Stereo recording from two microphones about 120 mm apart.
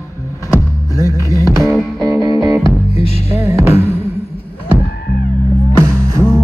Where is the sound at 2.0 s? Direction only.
25° right (ahead or behind).